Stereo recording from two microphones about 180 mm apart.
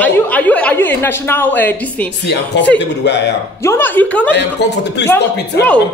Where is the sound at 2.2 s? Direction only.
70° left (ahead or behind).